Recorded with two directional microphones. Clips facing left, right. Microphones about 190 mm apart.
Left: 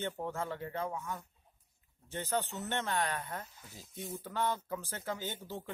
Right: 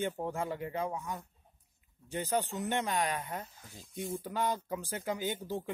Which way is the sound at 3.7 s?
Centre (ahead or behind).